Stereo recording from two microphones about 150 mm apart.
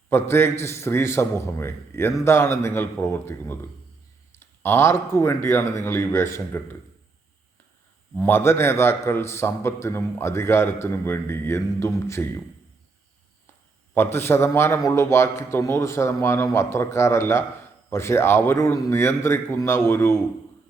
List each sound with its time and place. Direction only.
0.1 s a man's voice: 15° left (ahead or behind)
8.2 s a man's voice: 15° left (ahead or behind)
13.9 s a man's voice: 15° left (ahead or behind)